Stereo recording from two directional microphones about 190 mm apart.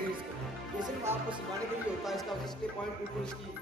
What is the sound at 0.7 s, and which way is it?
Music, 20° right (ahead or behind).